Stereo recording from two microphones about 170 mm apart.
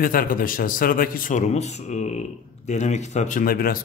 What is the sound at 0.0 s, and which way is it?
A man's voice, 55° left (ahead or behind).